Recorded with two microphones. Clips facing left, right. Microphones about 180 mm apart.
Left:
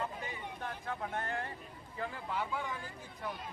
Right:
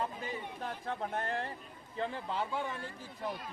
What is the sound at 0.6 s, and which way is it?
Speech, 30° right (ahead or behind).